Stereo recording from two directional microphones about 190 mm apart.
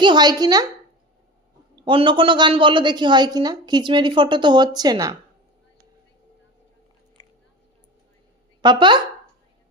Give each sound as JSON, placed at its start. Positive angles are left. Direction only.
{"t": 0.0, "sound": "a woman's voice", "side_deg": -25}
{"t": 1.8, "sound": "a woman's voice", "side_deg": -25}
{"t": 8.6, "sound": "a woman's voice", "side_deg": -25}